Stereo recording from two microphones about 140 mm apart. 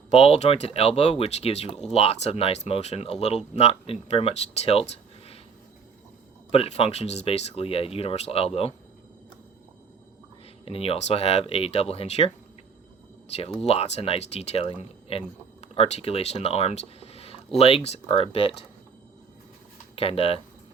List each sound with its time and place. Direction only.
0.1 s speech: 45° left (ahead or behind)
6.5 s speech: 45° left (ahead or behind)
10.7 s speech: 45° left (ahead or behind)
13.6 s speech: 45° left (ahead or behind)
20.0 s speech: 45° left (ahead or behind)